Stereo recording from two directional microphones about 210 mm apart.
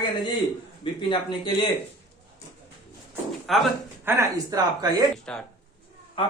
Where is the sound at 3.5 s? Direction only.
Centre (ahead or behind).